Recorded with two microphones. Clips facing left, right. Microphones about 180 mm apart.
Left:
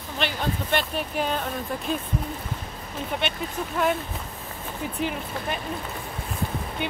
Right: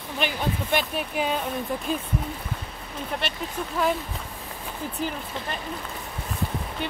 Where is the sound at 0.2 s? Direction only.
10° right (ahead or behind).